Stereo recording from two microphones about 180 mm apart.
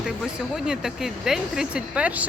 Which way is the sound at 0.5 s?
5° right (ahead or behind).